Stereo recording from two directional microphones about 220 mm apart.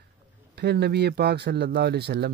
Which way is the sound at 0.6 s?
50° right (ahead or behind).